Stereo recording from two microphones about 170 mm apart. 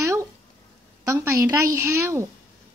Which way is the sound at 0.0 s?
15° right (ahead or behind).